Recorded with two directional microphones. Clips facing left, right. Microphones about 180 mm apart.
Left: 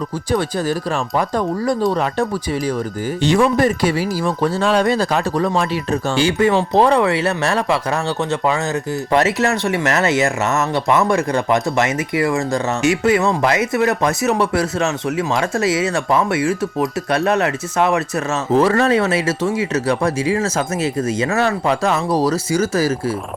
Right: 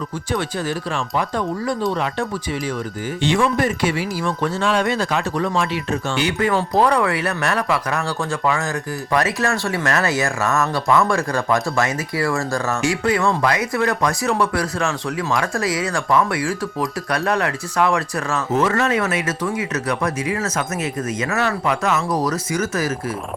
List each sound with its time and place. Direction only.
0.3 s speech: 40° left (ahead or behind)
3.2 s speech: 40° left (ahead or behind)